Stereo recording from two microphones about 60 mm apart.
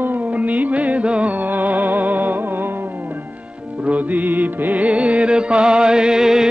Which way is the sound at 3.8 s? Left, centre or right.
Right.